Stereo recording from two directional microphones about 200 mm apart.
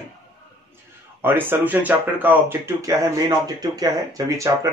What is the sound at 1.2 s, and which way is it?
Speech, 10° right (ahead or behind).